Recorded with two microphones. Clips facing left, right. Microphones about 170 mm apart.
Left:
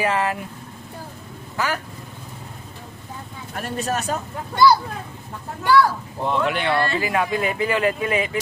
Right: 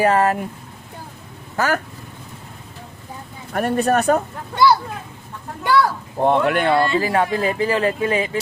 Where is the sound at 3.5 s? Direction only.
60° right (ahead or behind).